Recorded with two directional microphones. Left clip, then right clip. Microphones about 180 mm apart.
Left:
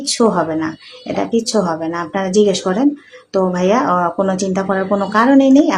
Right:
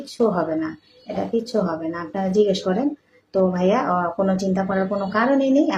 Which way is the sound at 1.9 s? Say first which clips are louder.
Left 6 dB; 30° left (ahead or behind).